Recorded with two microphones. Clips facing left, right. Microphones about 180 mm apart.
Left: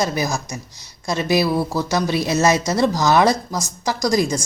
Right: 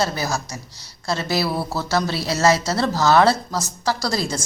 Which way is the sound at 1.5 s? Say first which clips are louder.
Left 4 dB; 10° right (ahead or behind).